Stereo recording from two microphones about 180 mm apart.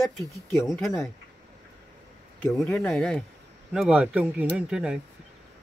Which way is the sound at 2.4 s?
5° left (ahead or behind).